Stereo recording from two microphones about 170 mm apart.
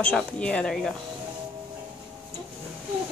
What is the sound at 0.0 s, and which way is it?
Speech, 5° left (ahead or behind).